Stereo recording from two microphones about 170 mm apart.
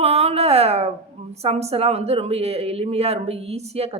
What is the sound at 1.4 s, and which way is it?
Speech, 40° right (ahead or behind).